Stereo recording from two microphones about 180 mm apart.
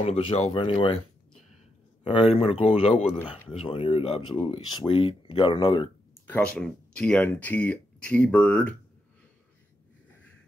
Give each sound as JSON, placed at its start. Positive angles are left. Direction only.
{"t": 0.0, "sound": "speech", "side_deg": 35}
{"t": 2.0, "sound": "speech", "side_deg": 30}
{"t": 6.2, "sound": "speech", "side_deg": 10}